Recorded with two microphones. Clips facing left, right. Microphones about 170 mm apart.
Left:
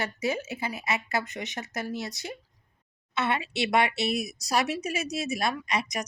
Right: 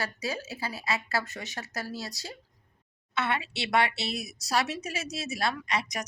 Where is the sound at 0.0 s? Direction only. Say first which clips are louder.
Left 4 dB; 20° left (ahead or behind).